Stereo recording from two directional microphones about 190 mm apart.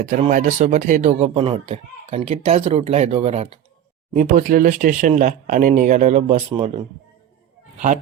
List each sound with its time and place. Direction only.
0.0 s speech: 45° right (ahead or behind)
4.1 s speech: 45° right (ahead or behind)